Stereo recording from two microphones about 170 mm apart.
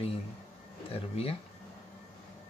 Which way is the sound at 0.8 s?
35° left (ahead or behind).